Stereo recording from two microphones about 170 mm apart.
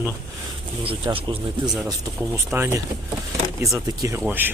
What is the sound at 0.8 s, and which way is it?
Speech, 35° right (ahead or behind).